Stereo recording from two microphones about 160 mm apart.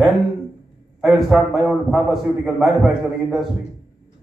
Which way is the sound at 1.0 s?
Centre (ahead or behind).